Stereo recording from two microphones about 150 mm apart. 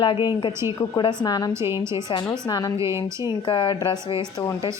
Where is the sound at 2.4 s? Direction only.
25° left (ahead or behind).